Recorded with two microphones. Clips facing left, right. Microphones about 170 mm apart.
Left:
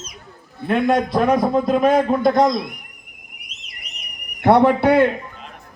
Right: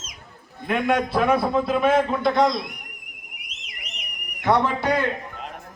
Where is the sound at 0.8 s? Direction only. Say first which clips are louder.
Left 3 dB; 35° left (ahead or behind).